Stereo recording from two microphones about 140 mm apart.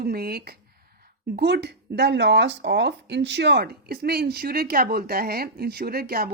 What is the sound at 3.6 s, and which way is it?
A woman's voice, 90° right.